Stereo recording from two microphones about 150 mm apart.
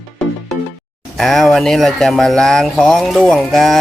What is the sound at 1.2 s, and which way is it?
Speech, centre (ahead or behind).